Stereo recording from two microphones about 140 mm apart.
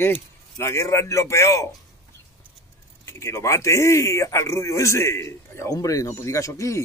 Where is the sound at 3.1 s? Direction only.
20° left (ahead or behind).